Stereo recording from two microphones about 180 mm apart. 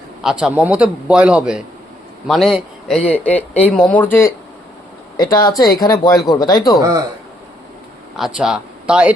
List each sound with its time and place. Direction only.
0.2 s a man's voice: 5° right (ahead or behind)
5.1 s speech: 20° left (ahead or behind)
8.1 s speech: centre (ahead or behind)